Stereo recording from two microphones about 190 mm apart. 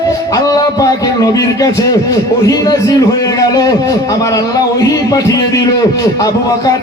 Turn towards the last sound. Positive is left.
turn(degrees=20)  # may be behind; listen again after turning